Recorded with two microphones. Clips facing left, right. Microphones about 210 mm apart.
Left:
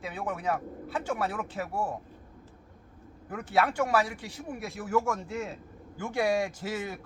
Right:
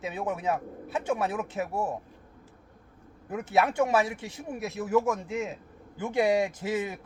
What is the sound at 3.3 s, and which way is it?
Speech, 20° right (ahead or behind).